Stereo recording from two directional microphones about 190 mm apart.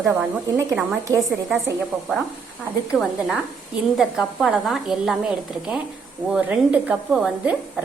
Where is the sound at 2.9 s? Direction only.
Centre (ahead or behind).